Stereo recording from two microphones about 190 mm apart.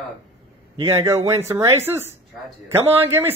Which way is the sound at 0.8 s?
15° right (ahead or behind).